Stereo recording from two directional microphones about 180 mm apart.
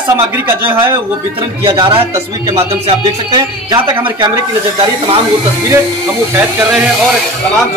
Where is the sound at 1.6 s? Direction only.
25° right (ahead or behind).